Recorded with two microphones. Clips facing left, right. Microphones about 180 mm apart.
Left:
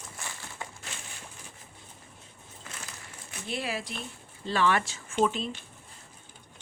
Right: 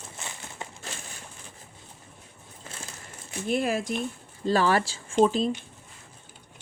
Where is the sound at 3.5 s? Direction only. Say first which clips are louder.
Right 8 dB; 45° right (ahead or behind).